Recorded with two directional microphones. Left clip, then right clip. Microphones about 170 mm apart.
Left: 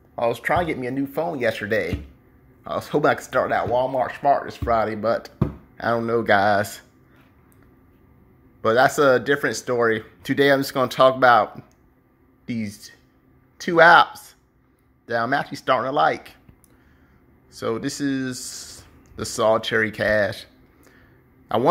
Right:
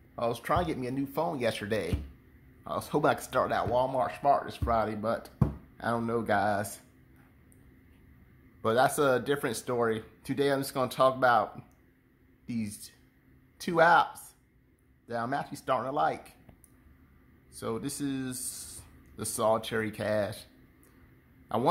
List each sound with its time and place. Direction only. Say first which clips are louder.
0.1 s speech: left 8 dB; centre (ahead or behind); by 6.8 s 15° left (ahead or behind)
8.6 s speech: left 9 dB; 10° left (ahead or behind)
12.4 s speech: left 7 dB; 5° left (ahead or behind)
13.7 s speech: left 10 dB; 10° left (ahead or behind)
17.5 s speech: left 10 dB; 10° left (ahead or behind)